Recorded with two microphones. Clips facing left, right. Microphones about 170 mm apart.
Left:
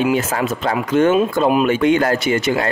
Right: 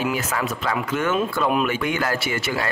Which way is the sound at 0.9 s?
25° left (ahead or behind).